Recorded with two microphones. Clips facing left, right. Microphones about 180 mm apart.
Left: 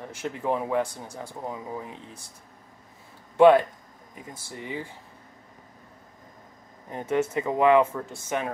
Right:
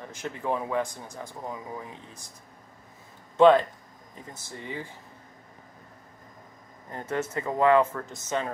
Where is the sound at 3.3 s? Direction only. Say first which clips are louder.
Left 2 dB; 10° left (ahead or behind).